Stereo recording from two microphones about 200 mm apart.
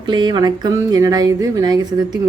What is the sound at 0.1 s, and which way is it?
A woman's voice, 20° right (ahead or behind).